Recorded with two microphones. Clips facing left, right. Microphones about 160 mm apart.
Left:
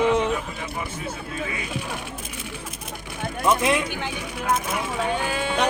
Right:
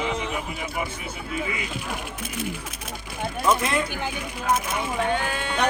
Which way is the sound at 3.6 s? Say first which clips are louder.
Left 3 dB; 5° left (ahead or behind).